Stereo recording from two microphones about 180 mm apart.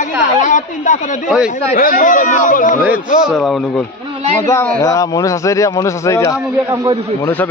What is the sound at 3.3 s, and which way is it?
Speech, centre (ahead or behind).